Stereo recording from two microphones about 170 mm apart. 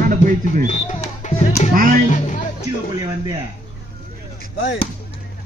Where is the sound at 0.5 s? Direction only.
45° left (ahead or behind).